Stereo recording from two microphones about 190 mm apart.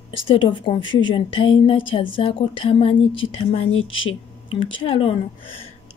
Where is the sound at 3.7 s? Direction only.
90° left.